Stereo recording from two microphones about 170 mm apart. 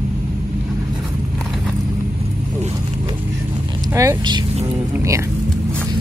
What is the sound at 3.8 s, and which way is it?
Speech, 15° right (ahead or behind).